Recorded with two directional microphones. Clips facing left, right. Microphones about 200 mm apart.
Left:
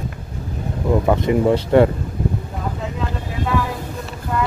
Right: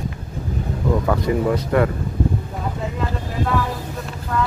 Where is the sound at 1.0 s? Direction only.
20° left (ahead or behind).